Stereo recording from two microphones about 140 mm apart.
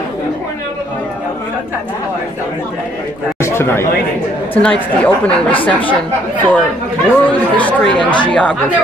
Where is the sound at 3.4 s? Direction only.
20° left (ahead or behind).